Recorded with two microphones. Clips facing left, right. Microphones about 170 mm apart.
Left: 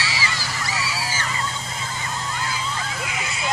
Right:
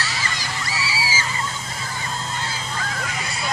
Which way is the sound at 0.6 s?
Centre (ahead or behind).